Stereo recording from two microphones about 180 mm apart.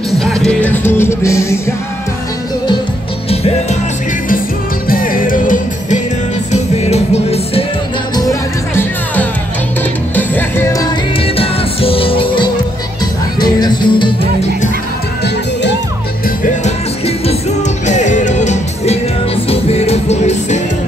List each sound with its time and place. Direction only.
0.2 s music: 5° left (ahead or behind)
4.8 s music: 50° left (ahead or behind)
6.5 s music: 35° left (ahead or behind)
8.2 s music: 15° left (ahead or behind)
11.1 s music: 30° left (ahead or behind)
16.6 s music: 35° left (ahead or behind)